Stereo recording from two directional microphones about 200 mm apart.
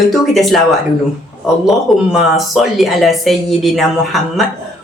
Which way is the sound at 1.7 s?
Centre (ahead or behind).